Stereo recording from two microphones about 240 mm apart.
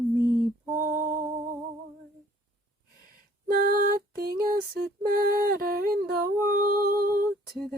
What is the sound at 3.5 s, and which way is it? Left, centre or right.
Music, right.